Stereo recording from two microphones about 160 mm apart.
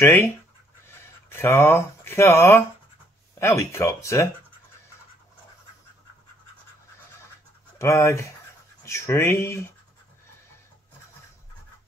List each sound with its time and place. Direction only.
0.0 s speech: 15° left (ahead or behind)
7.8 s speech: 20° left (ahead or behind)